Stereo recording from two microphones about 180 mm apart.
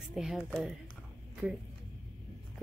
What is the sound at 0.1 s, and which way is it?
Speech, 5° right (ahead or behind).